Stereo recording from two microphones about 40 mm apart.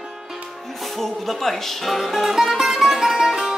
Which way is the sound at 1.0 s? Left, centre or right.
Centre.